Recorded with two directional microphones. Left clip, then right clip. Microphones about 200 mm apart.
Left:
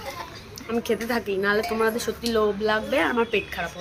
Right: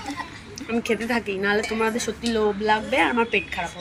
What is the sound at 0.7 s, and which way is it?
Speech, 15° left (ahead or behind).